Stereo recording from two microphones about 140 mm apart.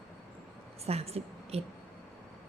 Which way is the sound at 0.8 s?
45° right (ahead or behind).